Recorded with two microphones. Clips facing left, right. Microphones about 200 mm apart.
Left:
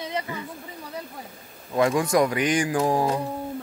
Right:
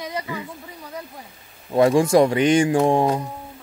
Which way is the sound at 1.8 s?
30° right (ahead or behind).